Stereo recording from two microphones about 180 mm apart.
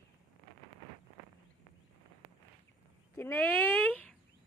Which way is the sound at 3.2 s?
10° left (ahead or behind).